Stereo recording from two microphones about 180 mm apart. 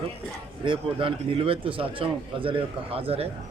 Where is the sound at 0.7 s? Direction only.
30° right (ahead or behind).